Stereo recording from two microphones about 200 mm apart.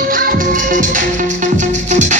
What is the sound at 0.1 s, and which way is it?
Music, 45° right (ahead or behind).